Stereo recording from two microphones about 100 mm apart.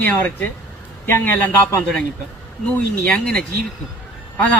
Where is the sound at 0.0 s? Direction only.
20° left (ahead or behind).